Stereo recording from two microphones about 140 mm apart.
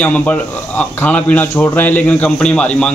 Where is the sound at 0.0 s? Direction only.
10° left (ahead or behind).